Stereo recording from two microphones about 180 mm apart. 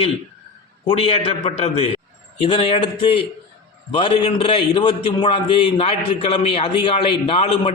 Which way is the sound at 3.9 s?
30° left (ahead or behind).